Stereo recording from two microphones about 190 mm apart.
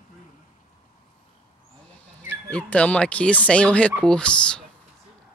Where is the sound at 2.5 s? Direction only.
5° left (ahead or behind).